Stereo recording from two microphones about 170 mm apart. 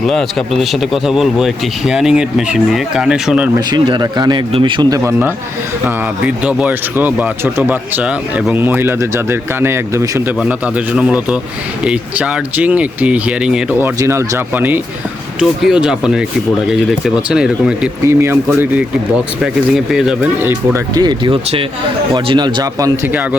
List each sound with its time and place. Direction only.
0.0 s speech: centre (ahead or behind)
3.7 s speech: 25° right (ahead or behind); by 20.1 s 5° right (ahead or behind)
20.4 s speech: 15° right (ahead or behind)